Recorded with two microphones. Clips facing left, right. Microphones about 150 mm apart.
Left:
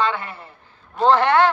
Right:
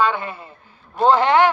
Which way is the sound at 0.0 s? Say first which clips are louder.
Right 3 dB; 15° right (ahead or behind).